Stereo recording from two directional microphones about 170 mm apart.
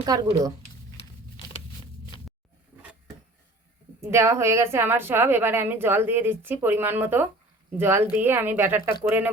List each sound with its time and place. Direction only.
0.0 s speech: 20° right (ahead or behind)
4.0 s a woman's voice: 15° right (ahead or behind)